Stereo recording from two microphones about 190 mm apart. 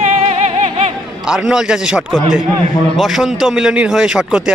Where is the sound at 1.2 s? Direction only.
5° right (ahead or behind).